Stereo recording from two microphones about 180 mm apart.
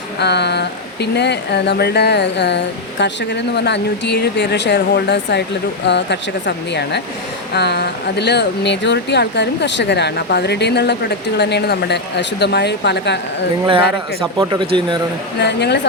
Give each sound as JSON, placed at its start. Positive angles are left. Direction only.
{"t": 0.2, "sound": "speech", "side_deg": 70}
{"t": 7.5, "sound": "speech", "side_deg": 65}
{"t": 14.3, "sound": "speech", "side_deg": -25}
{"t": 15.4, "sound": "speech", "side_deg": 70}